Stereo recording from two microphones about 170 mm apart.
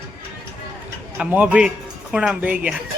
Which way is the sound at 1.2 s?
5° right (ahead or behind).